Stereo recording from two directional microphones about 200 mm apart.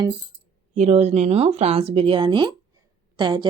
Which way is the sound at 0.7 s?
35° right (ahead or behind).